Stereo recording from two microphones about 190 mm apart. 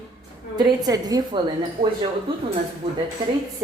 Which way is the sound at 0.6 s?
20° right (ahead or behind).